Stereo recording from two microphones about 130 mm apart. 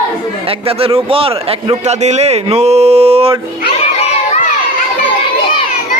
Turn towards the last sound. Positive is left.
turn(degrees=50)  # may be behind; listen again after turning